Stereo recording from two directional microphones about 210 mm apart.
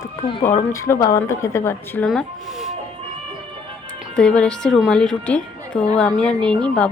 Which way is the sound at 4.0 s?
5° left (ahead or behind).